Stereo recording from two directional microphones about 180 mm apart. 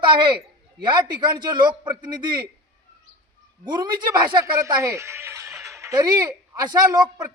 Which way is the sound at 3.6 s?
25° right (ahead or behind).